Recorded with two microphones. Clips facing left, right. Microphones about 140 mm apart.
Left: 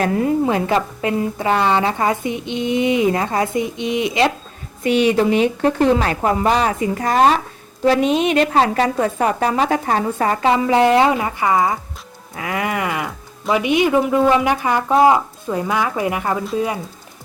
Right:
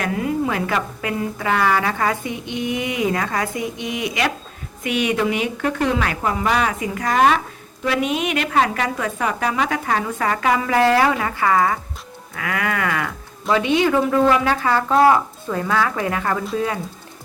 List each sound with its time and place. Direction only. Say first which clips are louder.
0.0 s a woman's voice: left 5 dB; 35° left (ahead or behind); by 16.8 s 15° left (ahead or behind)